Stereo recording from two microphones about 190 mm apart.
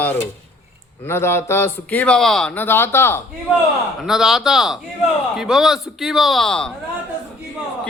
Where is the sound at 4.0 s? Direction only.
Centre (ahead or behind).